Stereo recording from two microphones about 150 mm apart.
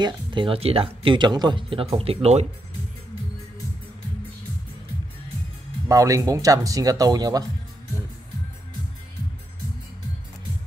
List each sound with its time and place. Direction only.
0.0 s speech: 35° right (ahead or behind)
5.9 s speech: 20° right (ahead or behind)